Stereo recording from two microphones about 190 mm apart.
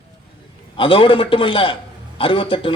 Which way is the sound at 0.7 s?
25° left (ahead or behind).